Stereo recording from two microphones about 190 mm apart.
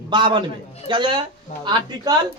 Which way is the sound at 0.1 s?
25° right (ahead or behind).